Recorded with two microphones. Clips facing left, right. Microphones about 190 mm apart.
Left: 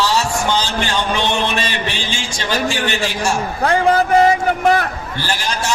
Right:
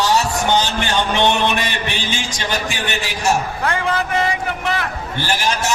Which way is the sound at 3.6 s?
35° left (ahead or behind).